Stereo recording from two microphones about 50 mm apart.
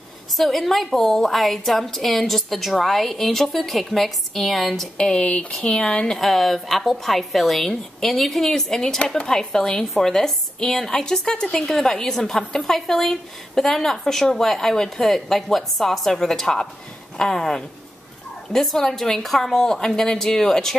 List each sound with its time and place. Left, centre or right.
0.4 s a woman's voice: centre
4.9 s a woman's voice: centre